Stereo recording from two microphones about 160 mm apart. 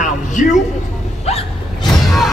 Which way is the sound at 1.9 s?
Centre (ahead or behind).